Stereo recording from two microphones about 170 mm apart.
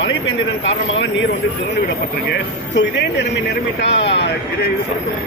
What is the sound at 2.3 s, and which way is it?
Speech, 90° left.